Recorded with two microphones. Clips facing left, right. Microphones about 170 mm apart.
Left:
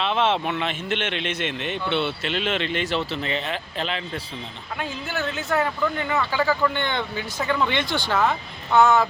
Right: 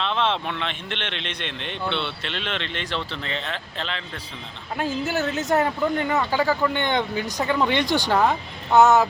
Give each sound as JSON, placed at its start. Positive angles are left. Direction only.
{"t": 0.0, "sound": "speech", "side_deg": 10}
{"t": 4.8, "sound": "a woman's voice", "side_deg": -40}
{"t": 6.1, "sound": "speech", "side_deg": -15}
{"t": 8.7, "sound": "a woman's voice", "side_deg": -40}